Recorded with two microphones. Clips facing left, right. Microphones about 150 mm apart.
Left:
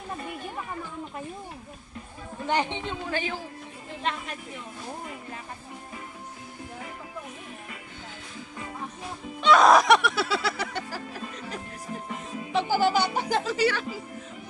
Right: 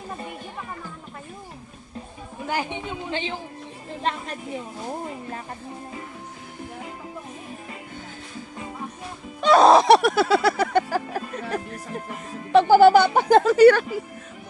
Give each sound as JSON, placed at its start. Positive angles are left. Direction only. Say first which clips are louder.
{"t": 2.4, "sound": "speech", "louder": "left 1 dB", "side_deg": -10}
{"t": 3.1, "sound": "speech", "louder": "right 1 dB", "side_deg": -25}
{"t": 4.0, "sound": "speech", "louder": "right 4 dB", "side_deg": -35}
{"t": 9.4, "sound": "music", "louder": "right 3 dB", "side_deg": -35}
{"t": 12.0, "sound": "music", "louder": "right 1 dB", "side_deg": 0}
{"t": 12.5, "sound": "music", "louder": "right 11 dB", "side_deg": -60}